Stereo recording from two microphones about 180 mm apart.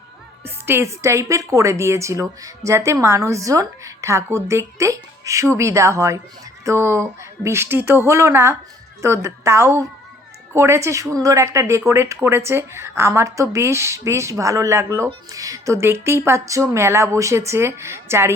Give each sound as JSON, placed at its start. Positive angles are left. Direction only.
{"t": 0.4, "sound": "a woman's voice", "side_deg": -15}